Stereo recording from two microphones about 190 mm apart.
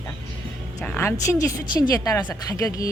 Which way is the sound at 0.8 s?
10° left (ahead or behind).